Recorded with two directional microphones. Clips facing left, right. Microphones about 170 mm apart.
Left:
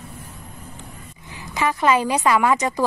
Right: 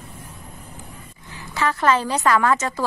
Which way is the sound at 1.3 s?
15° left (ahead or behind).